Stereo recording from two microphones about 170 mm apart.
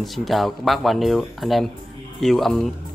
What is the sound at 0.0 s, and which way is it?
Speech, centre (ahead or behind).